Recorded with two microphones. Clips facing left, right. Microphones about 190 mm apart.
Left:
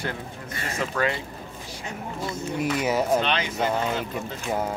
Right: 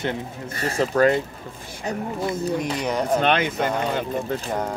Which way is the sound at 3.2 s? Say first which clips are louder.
Right 4 dB; 55° right (ahead or behind).